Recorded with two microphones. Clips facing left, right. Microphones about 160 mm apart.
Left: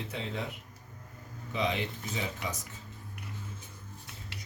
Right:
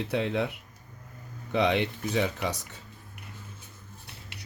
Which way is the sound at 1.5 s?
70° right (ahead or behind).